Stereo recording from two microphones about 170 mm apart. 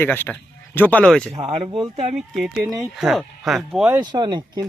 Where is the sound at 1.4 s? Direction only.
35° right (ahead or behind).